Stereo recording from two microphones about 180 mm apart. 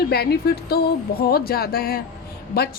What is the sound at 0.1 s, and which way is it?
A woman's voice, 60° left (ahead or behind).